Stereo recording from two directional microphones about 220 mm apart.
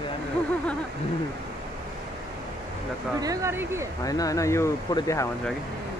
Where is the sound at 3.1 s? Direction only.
15° right (ahead or behind).